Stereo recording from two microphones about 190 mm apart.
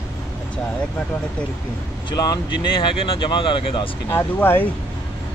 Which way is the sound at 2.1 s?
25° left (ahead or behind).